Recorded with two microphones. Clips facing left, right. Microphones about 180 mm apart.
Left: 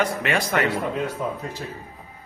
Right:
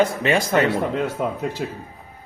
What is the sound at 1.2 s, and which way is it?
Speech, 75° right (ahead or behind).